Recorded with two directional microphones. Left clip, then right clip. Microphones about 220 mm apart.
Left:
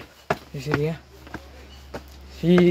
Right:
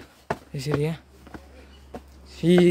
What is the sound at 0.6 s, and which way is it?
Speech, 30° right (ahead or behind).